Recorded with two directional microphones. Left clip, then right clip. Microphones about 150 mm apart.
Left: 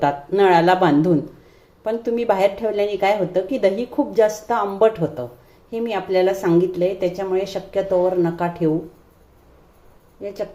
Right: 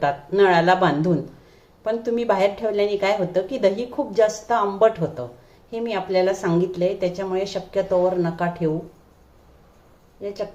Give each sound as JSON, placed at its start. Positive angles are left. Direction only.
{"t": 0.0, "sound": "a woman's voice", "side_deg": 25}
{"t": 10.2, "sound": "speech", "side_deg": 25}